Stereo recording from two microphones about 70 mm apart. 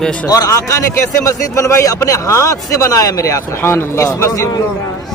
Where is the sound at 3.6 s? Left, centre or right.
Left.